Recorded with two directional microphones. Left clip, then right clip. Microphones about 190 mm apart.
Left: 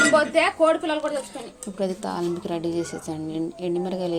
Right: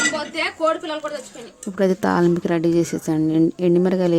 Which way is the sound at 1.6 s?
45° right (ahead or behind).